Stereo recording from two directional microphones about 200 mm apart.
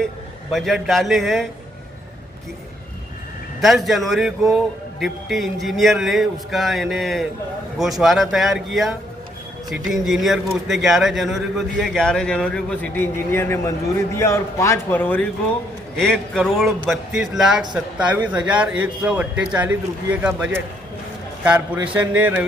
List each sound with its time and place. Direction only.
0.0 s a man's voice: centre (ahead or behind)
3.6 s speech: centre (ahead or behind)